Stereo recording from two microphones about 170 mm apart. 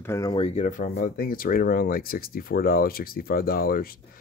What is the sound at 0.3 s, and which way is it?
Speech, 30° left (ahead or behind).